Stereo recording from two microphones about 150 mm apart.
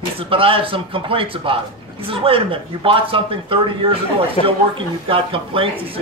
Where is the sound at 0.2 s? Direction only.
35° right (ahead or behind).